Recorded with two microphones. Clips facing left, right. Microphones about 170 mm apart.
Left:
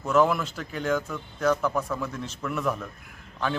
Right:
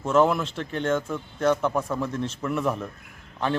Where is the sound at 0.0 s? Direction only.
25° right (ahead or behind).